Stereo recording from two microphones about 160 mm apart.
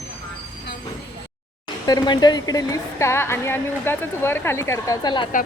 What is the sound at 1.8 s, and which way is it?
A woman's voice, 25° left (ahead or behind).